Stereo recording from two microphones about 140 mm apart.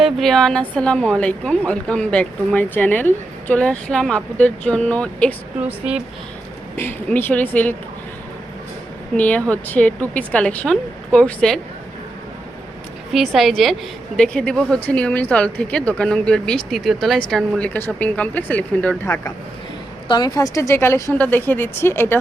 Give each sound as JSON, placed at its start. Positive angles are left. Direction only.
{"t": 0.0, "sound": "speech", "side_deg": 5}
{"t": 5.5, "sound": "speech", "side_deg": -10}
{"t": 6.7, "sound": "speech", "side_deg": 15}
{"t": 9.1, "sound": "speech", "side_deg": 10}
{"t": 13.1, "sound": "speech", "side_deg": 0}
{"t": 20.1, "sound": "speech", "side_deg": 30}